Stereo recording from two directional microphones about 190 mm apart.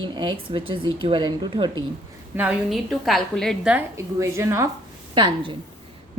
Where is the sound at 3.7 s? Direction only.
15° right (ahead or behind).